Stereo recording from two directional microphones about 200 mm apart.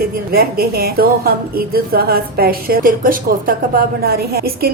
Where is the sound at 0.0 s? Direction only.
50° right (ahead or behind).